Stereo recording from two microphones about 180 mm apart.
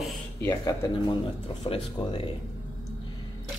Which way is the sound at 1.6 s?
30° left (ahead or behind).